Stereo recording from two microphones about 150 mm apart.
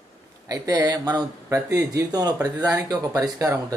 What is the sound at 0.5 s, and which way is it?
Speech, 25° right (ahead or behind).